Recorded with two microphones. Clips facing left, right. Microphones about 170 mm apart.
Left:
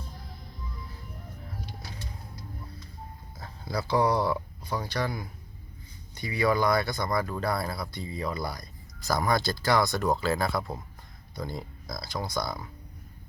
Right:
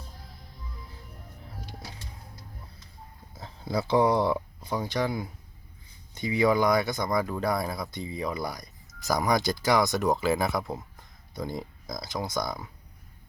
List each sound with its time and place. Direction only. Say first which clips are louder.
3.4 s speech: right 3 dB; 20° right (ahead or behind)